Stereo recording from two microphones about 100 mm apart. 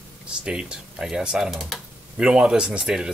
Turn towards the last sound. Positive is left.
turn(degrees=-5)  # may be behind; listen again after turning